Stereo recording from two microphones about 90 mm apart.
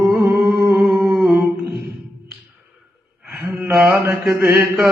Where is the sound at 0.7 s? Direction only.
10° right (ahead or behind).